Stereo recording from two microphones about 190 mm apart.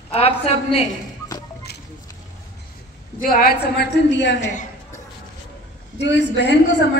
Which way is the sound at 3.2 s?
50° left (ahead or behind).